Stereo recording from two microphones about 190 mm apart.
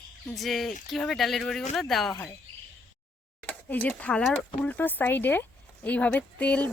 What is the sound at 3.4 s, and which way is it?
Speech, 10° left (ahead or behind).